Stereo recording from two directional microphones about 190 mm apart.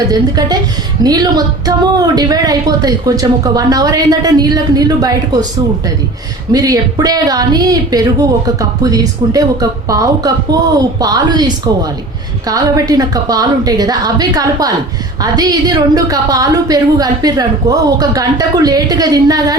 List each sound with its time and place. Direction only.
0.0 s a woman's voice: 20° right (ahead or behind)
6.5 s a woman's voice: 20° right (ahead or behind)